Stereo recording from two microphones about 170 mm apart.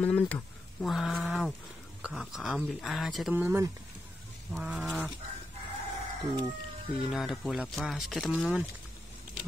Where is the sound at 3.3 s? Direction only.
15° right (ahead or behind).